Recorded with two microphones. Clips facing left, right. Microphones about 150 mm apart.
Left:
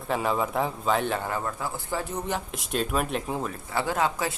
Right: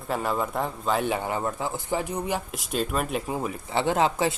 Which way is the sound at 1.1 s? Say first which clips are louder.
Right 2 dB; 20° right (ahead or behind).